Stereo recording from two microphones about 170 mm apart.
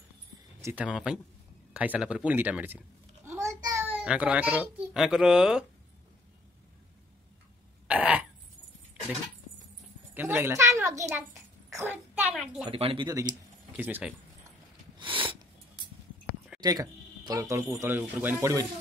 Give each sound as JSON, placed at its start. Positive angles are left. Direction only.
{"t": 0.6, "sound": "speech", "side_deg": -15}
{"t": 0.8, "sound": "speech", "side_deg": -5}
{"t": 3.3, "sound": "babbling", "side_deg": -20}
{"t": 4.9, "sound": "speech", "side_deg": -5}
{"t": 7.9, "sound": "cough", "side_deg": -5}
{"t": 10.1, "sound": "a child's voice", "side_deg": -15}
{"t": 12.6, "sound": "speech", "side_deg": -30}
{"t": 13.7, "sound": "speech", "side_deg": -10}
{"t": 15.0, "sound": "a sound", "side_deg": -30}
{"t": 16.6, "sound": "speech", "side_deg": -20}